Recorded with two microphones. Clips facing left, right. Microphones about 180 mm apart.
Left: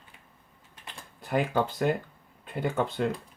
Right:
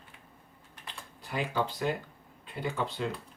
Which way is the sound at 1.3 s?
50° left (ahead or behind).